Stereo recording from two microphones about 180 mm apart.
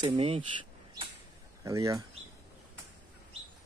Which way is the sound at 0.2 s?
35° right (ahead or behind).